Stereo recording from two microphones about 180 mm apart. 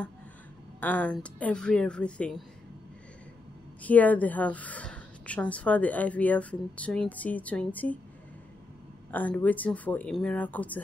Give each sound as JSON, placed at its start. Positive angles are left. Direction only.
{"t": 0.7, "sound": "speech", "side_deg": 10}
{"t": 3.8, "sound": "a woman's voice", "side_deg": 10}
{"t": 9.1, "sound": "a woman's voice", "side_deg": 10}